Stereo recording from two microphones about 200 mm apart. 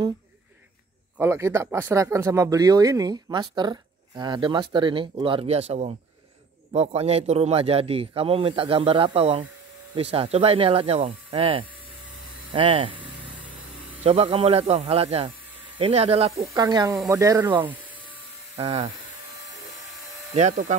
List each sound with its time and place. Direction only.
1.1 s speech: 10° right (ahead or behind)
14.0 s speech: 30° right (ahead or behind)
16.5 s speech: 20° right (ahead or behind)